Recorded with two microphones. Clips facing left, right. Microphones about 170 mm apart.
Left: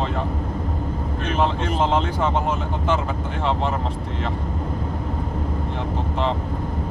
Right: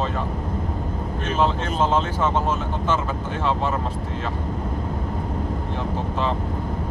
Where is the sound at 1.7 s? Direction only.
15° left (ahead or behind).